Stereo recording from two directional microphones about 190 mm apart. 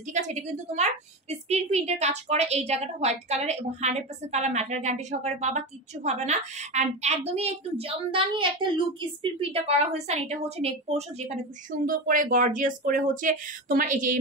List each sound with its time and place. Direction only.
0.0 s a woman's voice: 40° right (ahead or behind)
11.8 s speech: 45° right (ahead or behind)